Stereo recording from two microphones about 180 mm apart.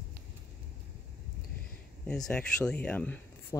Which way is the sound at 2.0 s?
5° left (ahead or behind).